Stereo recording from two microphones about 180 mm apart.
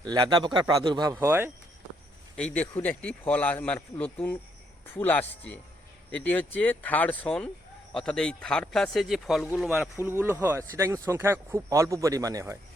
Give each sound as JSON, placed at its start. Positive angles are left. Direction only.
{"t": 0.0, "sound": "speech", "side_deg": -25}
{"t": 2.3, "sound": "speech", "side_deg": 5}